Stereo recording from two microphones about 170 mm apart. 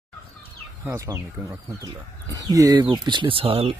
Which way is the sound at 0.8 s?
15° right (ahead or behind).